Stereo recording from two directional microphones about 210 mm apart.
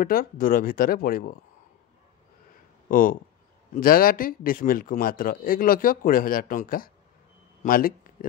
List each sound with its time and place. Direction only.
0.0 s speech: 45° left (ahead or behind)
2.9 s speech: 40° left (ahead or behind)